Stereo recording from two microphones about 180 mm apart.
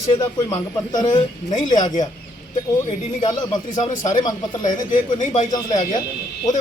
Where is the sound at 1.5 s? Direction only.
40° left (ahead or behind).